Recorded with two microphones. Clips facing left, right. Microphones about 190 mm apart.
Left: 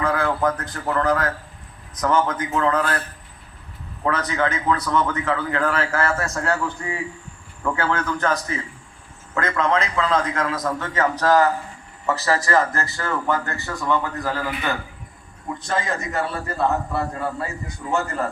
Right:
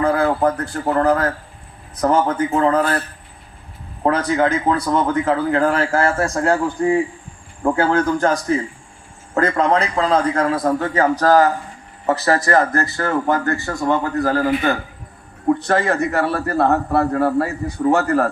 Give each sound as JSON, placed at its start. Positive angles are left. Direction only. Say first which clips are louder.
{"t": 0.0, "sound": "a man's voice", "louder": "right 5 dB", "side_deg": -35}
{"t": 4.0, "sound": "a man's voice", "louder": "right 6 dB", "side_deg": -30}
{"t": 15.4, "sound": "a man's voice", "louder": "right 9 dB", "side_deg": -65}